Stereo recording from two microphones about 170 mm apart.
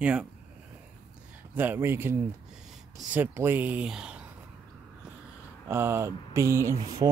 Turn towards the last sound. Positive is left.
turn(degrees=-15)  # may be behind; listen again after turning